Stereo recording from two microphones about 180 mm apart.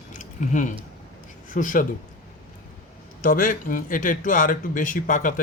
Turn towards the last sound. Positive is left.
turn(degrees=45)  # may be behind; listen again after turning